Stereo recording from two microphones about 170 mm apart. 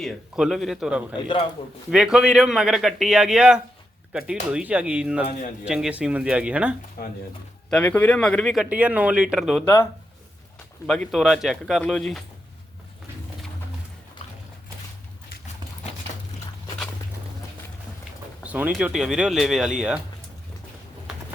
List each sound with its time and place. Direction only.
0.0 s a man's voice: centre (ahead or behind)
7.0 s speech: 60° left (ahead or behind)
7.7 s speech: 10° left (ahead or behind)
8.7 s a man's voice: 10° right (ahead or behind)
9.6 s speech: 15° left (ahead or behind)
10.8 s a man's voice: centre (ahead or behind)
18.4 s a man's voice: 10° right (ahead or behind)